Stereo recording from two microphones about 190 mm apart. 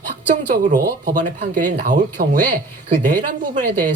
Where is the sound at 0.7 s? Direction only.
40° right (ahead or behind).